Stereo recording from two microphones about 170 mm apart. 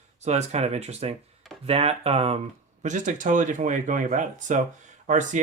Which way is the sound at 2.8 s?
45° right (ahead or behind).